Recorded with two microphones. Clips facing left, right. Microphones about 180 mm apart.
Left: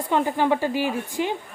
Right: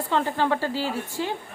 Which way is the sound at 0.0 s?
15° left (ahead or behind).